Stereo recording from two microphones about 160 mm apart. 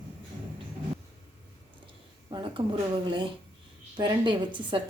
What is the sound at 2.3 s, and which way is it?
A woman's voice, 30° right (ahead or behind).